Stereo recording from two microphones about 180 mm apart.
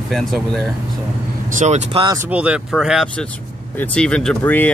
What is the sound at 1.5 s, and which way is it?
Speech, 40° right (ahead or behind).